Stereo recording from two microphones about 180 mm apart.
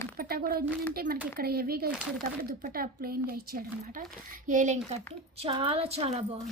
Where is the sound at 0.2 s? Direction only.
55° right (ahead or behind).